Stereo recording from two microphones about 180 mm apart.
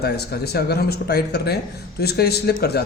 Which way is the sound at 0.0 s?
65° left (ahead or behind).